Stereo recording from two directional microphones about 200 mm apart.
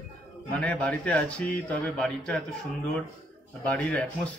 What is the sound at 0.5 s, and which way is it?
A man's voice, 5° left (ahead or behind).